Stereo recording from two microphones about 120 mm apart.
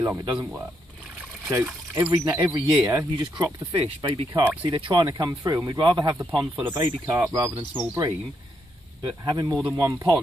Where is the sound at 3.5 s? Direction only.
35° right (ahead or behind).